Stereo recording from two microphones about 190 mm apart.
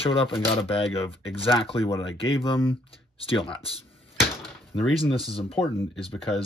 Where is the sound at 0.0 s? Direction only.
30° left (ahead or behind).